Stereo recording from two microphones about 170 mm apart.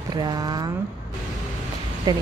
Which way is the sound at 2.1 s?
25° right (ahead or behind).